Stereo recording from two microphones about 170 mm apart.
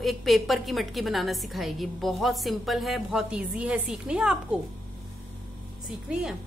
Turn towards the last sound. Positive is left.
turn(degrees=-5)  # may be behind; listen again after turning